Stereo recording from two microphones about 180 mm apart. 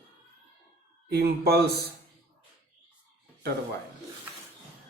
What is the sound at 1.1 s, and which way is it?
Speech, 60° right (ahead or behind).